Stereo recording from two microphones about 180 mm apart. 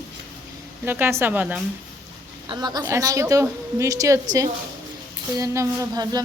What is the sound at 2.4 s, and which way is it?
A woman's voice, 25° right (ahead or behind).